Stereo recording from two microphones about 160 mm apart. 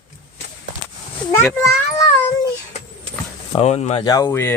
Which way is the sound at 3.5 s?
40° left (ahead or behind).